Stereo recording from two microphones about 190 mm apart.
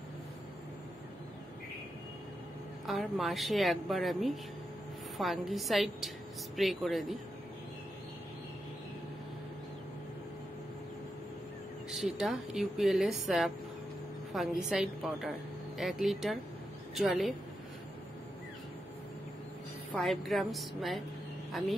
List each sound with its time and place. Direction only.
2.9 s a woman's voice: centre (ahead or behind)
11.9 s a woman's voice: centre (ahead or behind)
19.9 s a woman's voice: centre (ahead or behind)